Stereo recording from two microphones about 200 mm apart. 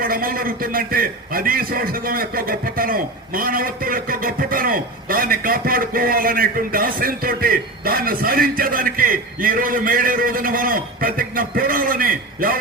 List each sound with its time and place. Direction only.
0.0 s a man's voice: 45° right (ahead or behind)